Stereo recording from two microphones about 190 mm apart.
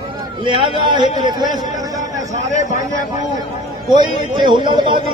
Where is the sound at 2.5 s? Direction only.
40° left (ahead or behind).